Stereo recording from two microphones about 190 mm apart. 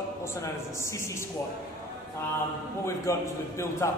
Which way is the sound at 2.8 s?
15° left (ahead or behind).